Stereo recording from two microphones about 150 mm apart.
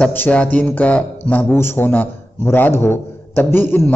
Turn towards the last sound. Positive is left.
turn(degrees=15)  # may be behind; listen again after turning